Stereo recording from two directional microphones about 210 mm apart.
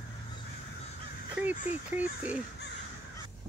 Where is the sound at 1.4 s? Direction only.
5° right (ahead or behind).